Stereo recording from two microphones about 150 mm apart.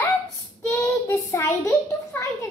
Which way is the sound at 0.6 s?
20° left (ahead or behind).